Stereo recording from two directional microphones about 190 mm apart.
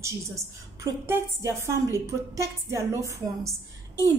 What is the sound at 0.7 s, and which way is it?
A woman's voice, 15° right (ahead or behind).